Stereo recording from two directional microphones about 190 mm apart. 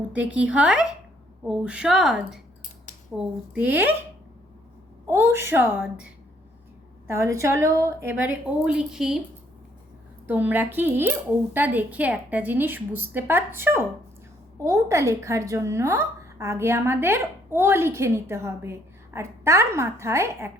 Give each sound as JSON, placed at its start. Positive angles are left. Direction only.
{"t": 0.1, "sound": "a woman's voice", "side_deg": -5}
{"t": 5.0, "sound": "a woman's voice", "side_deg": -15}
{"t": 7.1, "sound": "a woman's voice", "side_deg": -15}
{"t": 10.2, "sound": "a woman's voice", "side_deg": -10}